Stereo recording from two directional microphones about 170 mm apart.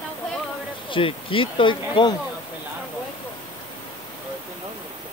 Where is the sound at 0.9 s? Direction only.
30° left (ahead or behind).